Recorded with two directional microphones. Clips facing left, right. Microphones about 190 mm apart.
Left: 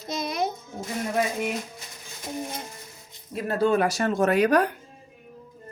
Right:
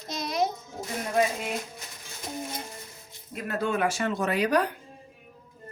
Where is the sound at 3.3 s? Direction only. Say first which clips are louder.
Left 6 dB; 35° left (ahead or behind); by 4.7 s 50° left (ahead or behind).